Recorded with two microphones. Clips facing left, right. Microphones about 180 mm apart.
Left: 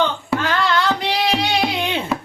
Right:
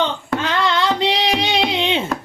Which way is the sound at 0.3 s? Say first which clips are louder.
Even; 20° right (ahead or behind).